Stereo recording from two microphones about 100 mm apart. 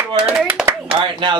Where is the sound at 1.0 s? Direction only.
55° right (ahead or behind).